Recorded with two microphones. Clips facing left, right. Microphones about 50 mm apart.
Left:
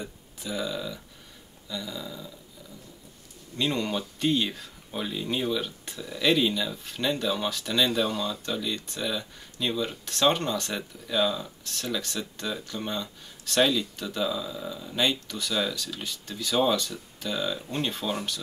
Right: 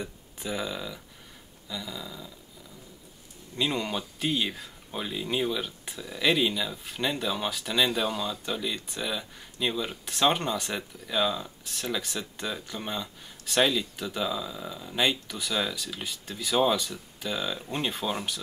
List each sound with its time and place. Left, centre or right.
0.4 s speech: centre
1.7 s a sound: centre
3.5 s speech: centre